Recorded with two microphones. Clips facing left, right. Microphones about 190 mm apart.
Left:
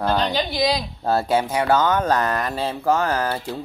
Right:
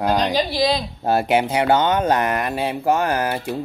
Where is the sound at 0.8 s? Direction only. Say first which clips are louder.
Right 2 dB; 20° right (ahead or behind).